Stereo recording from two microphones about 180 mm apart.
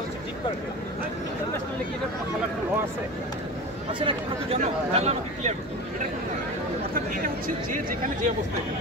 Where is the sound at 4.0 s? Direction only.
30° right (ahead or behind).